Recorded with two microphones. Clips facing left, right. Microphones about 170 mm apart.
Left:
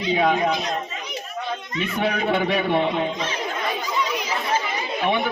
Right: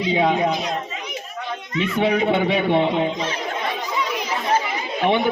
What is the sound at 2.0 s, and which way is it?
Speech, 25° right (ahead or behind).